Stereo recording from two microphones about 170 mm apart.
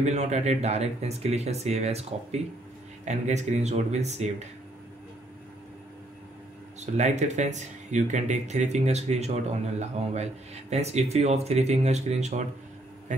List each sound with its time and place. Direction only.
0.0 s speech: 40° right (ahead or behind)
6.8 s speech: 40° right (ahead or behind)